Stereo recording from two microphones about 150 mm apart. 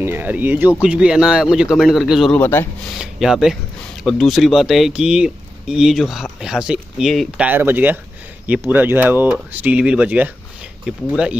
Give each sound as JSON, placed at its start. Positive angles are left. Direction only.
{"t": 0.0, "sound": "speech", "side_deg": -15}
{"t": 2.3, "sound": "speech", "side_deg": 15}
{"t": 3.0, "sound": "speech", "side_deg": -5}